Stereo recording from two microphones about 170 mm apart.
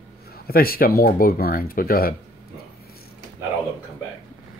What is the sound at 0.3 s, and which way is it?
Speech, 60° left (ahead or behind).